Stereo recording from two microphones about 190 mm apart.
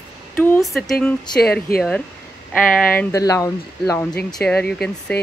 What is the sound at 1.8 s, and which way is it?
A man's voice, 5° left (ahead or behind).